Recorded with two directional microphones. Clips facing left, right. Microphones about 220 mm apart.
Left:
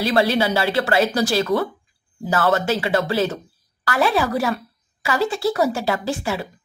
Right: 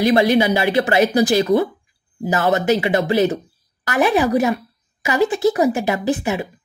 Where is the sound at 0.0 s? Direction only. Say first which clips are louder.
Right 4 dB; 15° right (ahead or behind).